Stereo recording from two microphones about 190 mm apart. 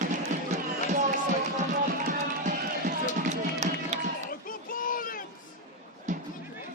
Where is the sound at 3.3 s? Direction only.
40° right (ahead or behind).